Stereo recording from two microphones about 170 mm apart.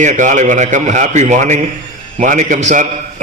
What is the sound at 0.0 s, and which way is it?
A man's voice, 45° right (ahead or behind).